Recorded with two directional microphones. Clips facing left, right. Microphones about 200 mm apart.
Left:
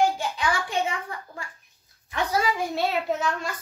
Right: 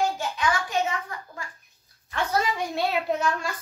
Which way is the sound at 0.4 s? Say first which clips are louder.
Right 3 dB; 30° left (ahead or behind).